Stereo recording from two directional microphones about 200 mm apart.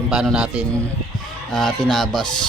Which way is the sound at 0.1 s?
5° right (ahead or behind).